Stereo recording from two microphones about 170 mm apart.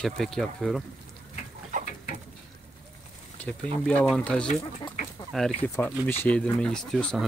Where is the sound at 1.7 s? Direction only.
50° right (ahead or behind).